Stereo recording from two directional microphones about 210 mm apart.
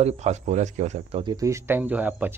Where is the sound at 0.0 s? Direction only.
30° right (ahead or behind).